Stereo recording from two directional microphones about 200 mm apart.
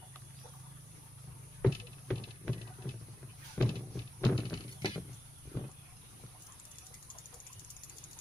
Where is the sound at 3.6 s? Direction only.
10° left (ahead or behind).